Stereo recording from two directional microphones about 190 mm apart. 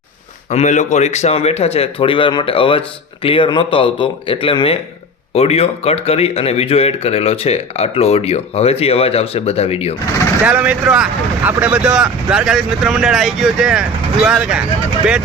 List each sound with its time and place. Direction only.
0.5 s speech: 40° left (ahead or behind)
10.4 s speech: 10° right (ahead or behind)